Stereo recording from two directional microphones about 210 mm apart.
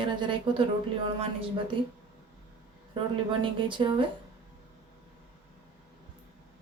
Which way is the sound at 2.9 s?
25° right (ahead or behind).